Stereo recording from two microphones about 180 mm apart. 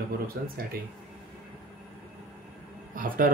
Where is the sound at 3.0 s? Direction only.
50° right (ahead or behind).